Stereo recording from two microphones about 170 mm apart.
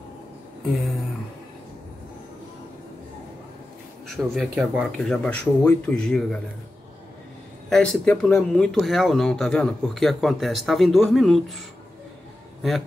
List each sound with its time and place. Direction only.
0.7 s speech: centre (ahead or behind)
4.4 s speech: centre (ahead or behind)
7.7 s speech: 5° left (ahead or behind)